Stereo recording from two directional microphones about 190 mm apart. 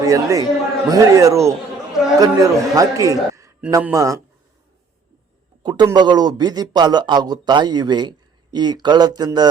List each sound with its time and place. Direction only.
0.0 s a man's voice: 15° right (ahead or behind)
5.6 s a man's voice: 20° right (ahead or behind)